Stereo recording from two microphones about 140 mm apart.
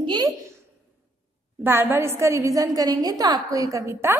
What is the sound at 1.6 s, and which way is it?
A woman's voice, 15° right (ahead or behind).